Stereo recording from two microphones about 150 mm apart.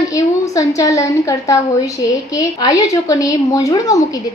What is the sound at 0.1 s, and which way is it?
A woman's voice, 20° left (ahead or behind).